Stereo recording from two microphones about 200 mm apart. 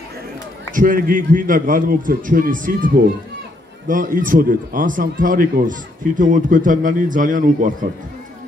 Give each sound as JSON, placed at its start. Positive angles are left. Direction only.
{"t": 0.7, "sound": "speech", "side_deg": -45}